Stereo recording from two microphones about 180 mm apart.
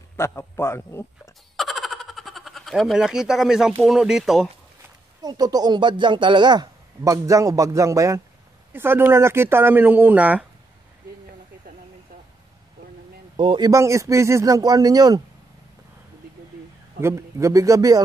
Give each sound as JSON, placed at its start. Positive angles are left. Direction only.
{"t": 0.2, "sound": "speech", "side_deg": 15}
{"t": 1.6, "sound": "a sound", "side_deg": 0}
{"t": 3.8, "sound": "speech", "side_deg": 0}
{"t": 5.2, "sound": "speech", "side_deg": -20}
{"t": 13.4, "sound": "speech", "side_deg": -30}
{"t": 13.7, "sound": "speech", "side_deg": -15}
{"t": 17.0, "sound": "speech", "side_deg": -15}